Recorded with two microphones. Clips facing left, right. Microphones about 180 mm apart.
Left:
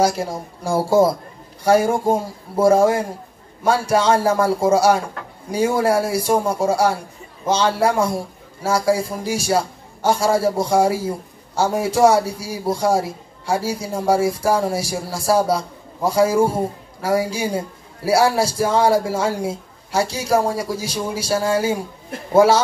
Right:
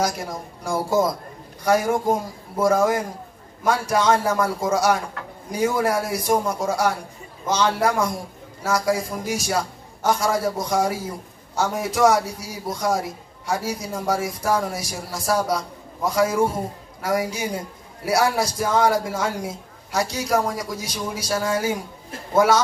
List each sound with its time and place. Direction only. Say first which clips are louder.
0.0 s a man's voice: left 6 dB; 30° left (ahead or behind)